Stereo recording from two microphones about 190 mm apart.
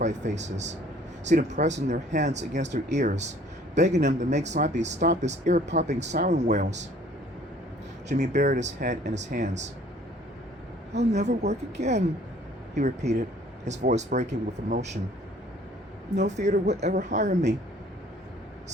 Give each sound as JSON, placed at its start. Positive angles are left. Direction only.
{"t": 0.0, "sound": "speech", "side_deg": -40}
{"t": 8.0, "sound": "speech", "side_deg": -40}
{"t": 10.9, "sound": "speech", "side_deg": -35}
{"t": 16.2, "sound": "speech", "side_deg": -35}